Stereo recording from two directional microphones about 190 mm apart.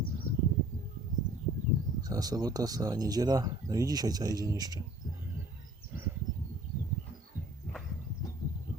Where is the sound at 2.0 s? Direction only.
20° right (ahead or behind).